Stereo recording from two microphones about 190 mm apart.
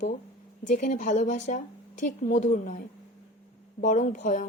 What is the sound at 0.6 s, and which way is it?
A woman's voice, 40° left (ahead or behind).